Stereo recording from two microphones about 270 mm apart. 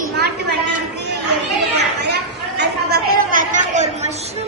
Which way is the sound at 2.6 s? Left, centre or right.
Right.